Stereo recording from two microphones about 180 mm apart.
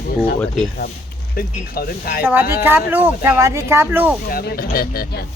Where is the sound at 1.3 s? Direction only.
55° left (ahead or behind).